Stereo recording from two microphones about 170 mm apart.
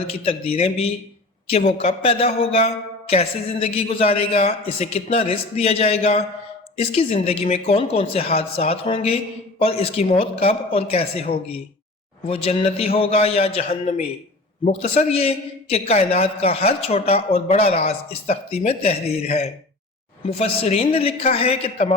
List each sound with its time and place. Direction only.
0.0 s speech: 35° left (ahead or behind)